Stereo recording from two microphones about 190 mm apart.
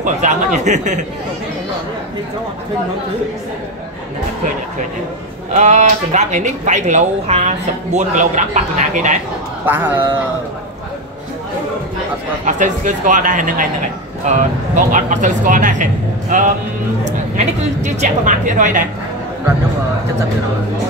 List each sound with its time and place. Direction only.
0.0 s speech: 40° right (ahead or behind)
5.5 s speech: 35° right (ahead or behind)
9.7 s speech: 10° right (ahead or behind)
12.4 s speech: 40° right (ahead or behind)
17.8 s speech: 40° right (ahead or behind)